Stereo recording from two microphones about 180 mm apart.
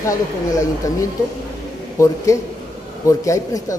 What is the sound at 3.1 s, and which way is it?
Speech, 15° left (ahead or behind).